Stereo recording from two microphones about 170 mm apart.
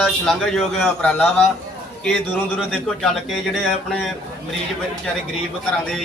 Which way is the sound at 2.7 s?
Centre (ahead or behind).